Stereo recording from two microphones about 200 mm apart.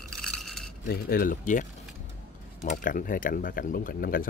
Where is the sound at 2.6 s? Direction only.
40° left (ahead or behind).